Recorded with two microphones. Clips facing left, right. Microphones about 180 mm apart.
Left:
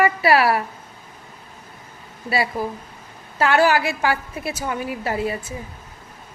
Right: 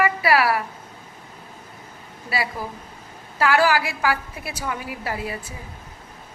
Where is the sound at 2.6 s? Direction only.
25° left (ahead or behind).